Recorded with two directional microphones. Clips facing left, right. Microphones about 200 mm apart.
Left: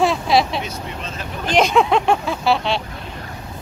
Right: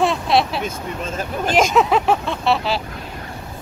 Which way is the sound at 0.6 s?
45° right (ahead or behind).